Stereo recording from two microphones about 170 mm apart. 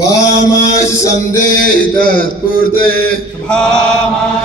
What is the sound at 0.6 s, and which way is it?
Music, 20° left (ahead or behind).